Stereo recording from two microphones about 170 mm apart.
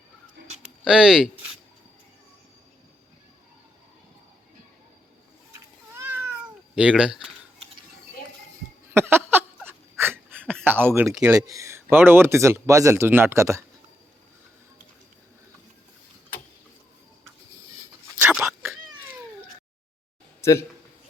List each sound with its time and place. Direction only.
0.9 s speech: 5° right (ahead or behind)
6.0 s cat: 10° right (ahead or behind)
8.9 s a sound: 15° right (ahead or behind)
10.6 s speech: 10° right (ahead or behind)
11.4 s speech: 20° right (ahead or behind)
18.4 s cat: 10° right (ahead or behind)
20.4 s a man's voice: 15° left (ahead or behind)